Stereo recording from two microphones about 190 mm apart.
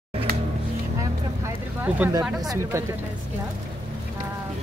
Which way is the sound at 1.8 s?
10° right (ahead or behind).